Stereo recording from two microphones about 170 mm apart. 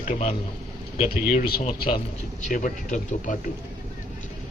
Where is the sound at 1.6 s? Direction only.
35° left (ahead or behind).